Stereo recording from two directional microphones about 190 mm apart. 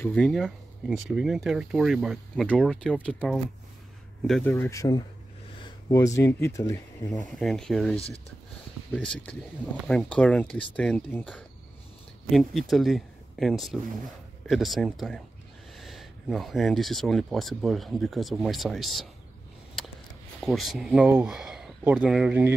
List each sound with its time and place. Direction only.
0.0 s speech: 5° left (ahead or behind)
4.5 s speech: 15° left (ahead or behind)
7.3 s speech: centre (ahead or behind)
20.3 s speech: centre (ahead or behind)